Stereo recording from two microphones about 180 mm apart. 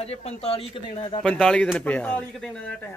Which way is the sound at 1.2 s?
5° left (ahead or behind).